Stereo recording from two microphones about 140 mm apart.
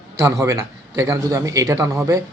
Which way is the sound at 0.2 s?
20° right (ahead or behind).